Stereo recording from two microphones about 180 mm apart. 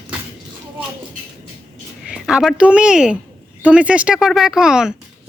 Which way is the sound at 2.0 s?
5° right (ahead or behind).